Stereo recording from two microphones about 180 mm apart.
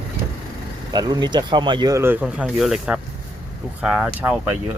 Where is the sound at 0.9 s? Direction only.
20° right (ahead or behind).